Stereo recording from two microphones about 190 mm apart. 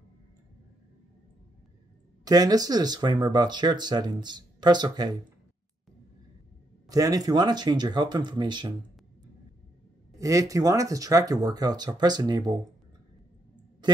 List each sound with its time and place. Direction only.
2.2 s speech: 20° right (ahead or behind)
6.9 s speech: 20° right (ahead or behind)
10.1 s speech: 15° right (ahead or behind)